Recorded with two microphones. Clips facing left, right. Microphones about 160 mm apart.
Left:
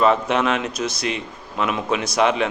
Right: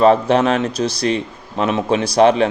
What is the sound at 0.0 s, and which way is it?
A man's voice, 35° right (ahead or behind).